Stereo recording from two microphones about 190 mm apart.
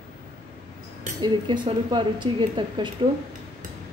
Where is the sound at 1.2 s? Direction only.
25° right (ahead or behind).